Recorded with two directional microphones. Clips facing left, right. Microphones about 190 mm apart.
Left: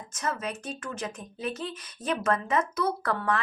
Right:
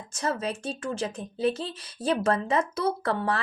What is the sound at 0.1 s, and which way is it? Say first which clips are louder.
Speech: right 3 dB; 30° right (ahead or behind).